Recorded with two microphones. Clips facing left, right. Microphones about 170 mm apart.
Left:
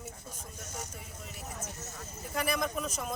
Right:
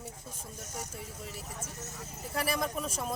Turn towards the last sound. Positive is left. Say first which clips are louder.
# even
turn(degrees=-30)  # may be behind; listen again after turning